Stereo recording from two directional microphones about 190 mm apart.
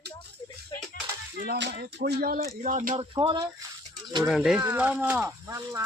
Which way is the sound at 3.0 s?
25° right (ahead or behind).